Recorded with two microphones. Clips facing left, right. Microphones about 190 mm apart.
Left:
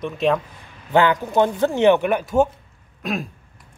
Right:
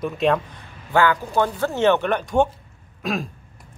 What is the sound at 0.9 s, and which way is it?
A man's voice, 20° left (ahead or behind).